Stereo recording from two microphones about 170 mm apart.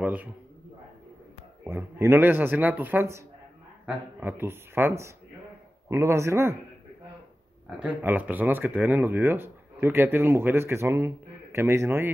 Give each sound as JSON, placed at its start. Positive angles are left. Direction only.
{"t": 0.0, "sound": "a man's voice", "side_deg": -10}
{"t": 1.6, "sound": "speech", "side_deg": -15}
{"t": 7.8, "sound": "speech", "side_deg": -10}